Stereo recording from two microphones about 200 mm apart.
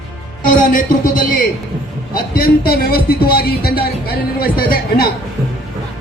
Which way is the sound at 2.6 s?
45° left (ahead or behind).